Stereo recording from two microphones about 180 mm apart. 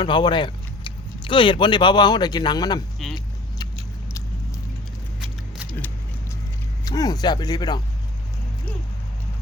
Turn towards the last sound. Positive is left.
turn(degrees=20)  # may be behind; listen again after turning